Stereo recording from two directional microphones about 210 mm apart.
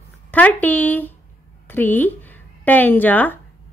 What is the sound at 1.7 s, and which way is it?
Speech, 10° left (ahead or behind).